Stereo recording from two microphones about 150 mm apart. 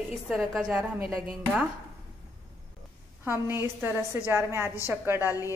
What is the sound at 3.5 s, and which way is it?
A woman's voice, 15° right (ahead or behind).